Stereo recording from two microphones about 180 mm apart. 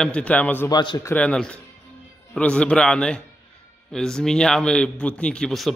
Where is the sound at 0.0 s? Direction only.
5° left (ahead or behind).